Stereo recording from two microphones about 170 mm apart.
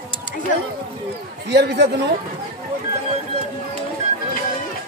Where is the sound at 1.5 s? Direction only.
75° right (ahead or behind).